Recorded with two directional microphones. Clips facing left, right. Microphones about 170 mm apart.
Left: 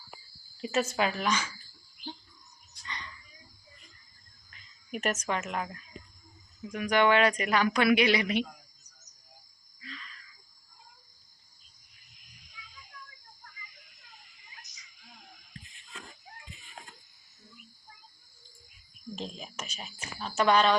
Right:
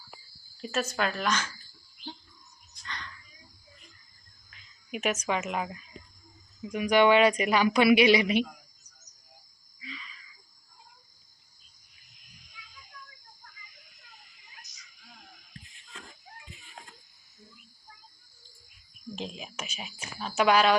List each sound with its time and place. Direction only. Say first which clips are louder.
0.7 s speech: left 2 dB; 20° left (ahead or behind)
0.9 s a woman's voice: even; 10° left (ahead or behind)
2.8 s a sound: right 1 dB; 10° left (ahead or behind)
4.5 s speech: even; 5° right (ahead or behind)
9.8 s a sound: right 2 dB; 10° right (ahead or behind)
19.1 s whispering: right 1 dB; 5° right (ahead or behind)